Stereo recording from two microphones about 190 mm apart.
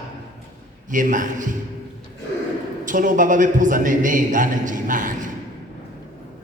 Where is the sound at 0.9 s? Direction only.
45° right (ahead or behind).